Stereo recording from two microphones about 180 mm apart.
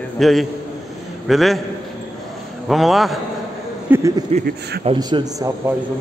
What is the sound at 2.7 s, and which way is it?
A man's voice, centre (ahead or behind).